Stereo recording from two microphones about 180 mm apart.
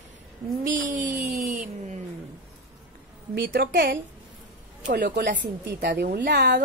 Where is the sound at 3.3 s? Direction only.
60° right (ahead or behind).